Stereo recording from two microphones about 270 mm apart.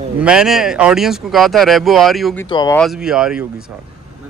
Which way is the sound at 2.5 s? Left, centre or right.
Centre.